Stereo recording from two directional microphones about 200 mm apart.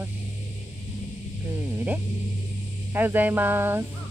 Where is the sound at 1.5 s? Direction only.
5° right (ahead or behind).